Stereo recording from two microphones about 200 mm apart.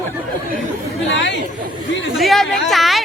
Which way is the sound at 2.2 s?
Centre (ahead or behind).